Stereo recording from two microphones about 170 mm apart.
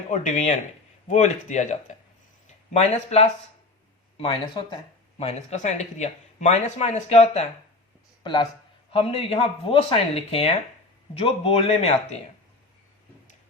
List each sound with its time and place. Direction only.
0.1 s speech: 45° left (ahead or behind)
4.2 s speech: 30° left (ahead or behind)
5.1 s speech: 40° left (ahead or behind)
8.2 s speech: 30° left (ahead or behind)